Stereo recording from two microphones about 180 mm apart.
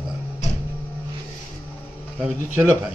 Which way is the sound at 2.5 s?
10° right (ahead or behind).